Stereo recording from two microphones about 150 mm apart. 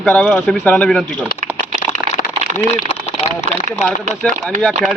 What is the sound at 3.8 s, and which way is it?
Speech, 50° left (ahead or behind).